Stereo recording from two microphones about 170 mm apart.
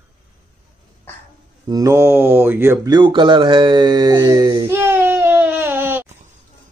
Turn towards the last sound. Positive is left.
turn(degrees=-10)  # may be behind; listen again after turning